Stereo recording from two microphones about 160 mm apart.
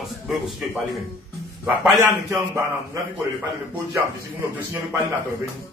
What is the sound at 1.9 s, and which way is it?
Speech, 20° right (ahead or behind).